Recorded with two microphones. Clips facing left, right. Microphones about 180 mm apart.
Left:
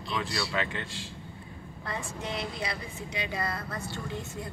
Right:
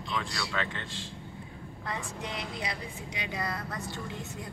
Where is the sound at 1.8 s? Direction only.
15° right (ahead or behind).